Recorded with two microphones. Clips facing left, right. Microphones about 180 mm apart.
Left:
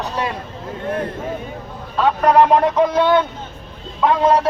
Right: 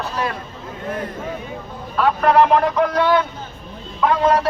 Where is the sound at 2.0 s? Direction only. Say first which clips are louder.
Left 1 dB; 20° left (ahead or behind).